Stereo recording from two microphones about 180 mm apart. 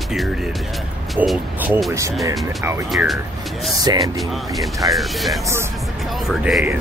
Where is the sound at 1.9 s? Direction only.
15° right (ahead or behind).